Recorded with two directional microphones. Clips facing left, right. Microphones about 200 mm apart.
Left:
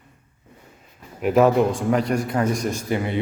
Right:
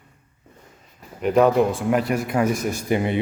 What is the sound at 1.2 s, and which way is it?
Speech, 5° left (ahead or behind).